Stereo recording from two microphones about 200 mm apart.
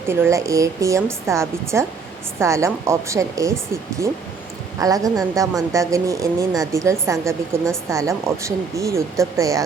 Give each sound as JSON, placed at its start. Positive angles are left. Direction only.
{"t": 0.1, "sound": "speech", "side_deg": -15}
{"t": 4.8, "sound": "speech", "side_deg": -15}